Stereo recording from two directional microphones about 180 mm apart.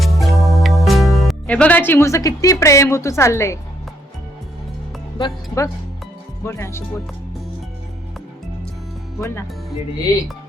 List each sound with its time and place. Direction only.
0.0 s music: centre (ahead or behind); by 3.6 s 15° left (ahead or behind)
5.1 s speech: 20° left (ahead or behind)